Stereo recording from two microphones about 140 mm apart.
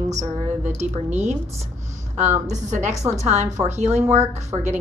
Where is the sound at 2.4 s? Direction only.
60° right (ahead or behind).